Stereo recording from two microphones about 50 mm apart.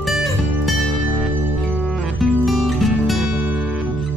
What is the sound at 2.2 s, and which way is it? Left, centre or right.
Music, centre.